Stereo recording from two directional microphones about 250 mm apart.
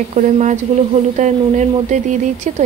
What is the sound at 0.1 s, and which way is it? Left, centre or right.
Speech, right.